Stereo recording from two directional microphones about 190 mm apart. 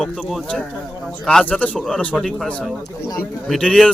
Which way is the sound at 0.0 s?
Centre (ahead or behind).